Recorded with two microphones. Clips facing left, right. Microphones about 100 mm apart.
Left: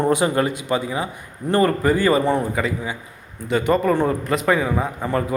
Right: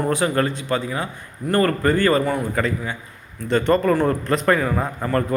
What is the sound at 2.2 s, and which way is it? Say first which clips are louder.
Speech: left 3 dB; 25° left (ahead or behind).